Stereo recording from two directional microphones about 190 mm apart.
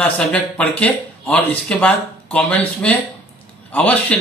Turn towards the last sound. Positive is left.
turn(degrees=10)  # may be behind; listen again after turning